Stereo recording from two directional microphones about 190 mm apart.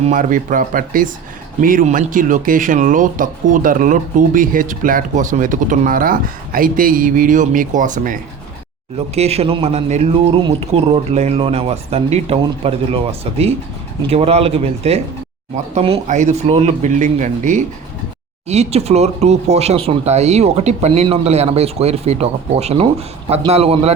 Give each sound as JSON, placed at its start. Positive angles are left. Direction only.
{"t": 0.0, "sound": "speech", "side_deg": -40}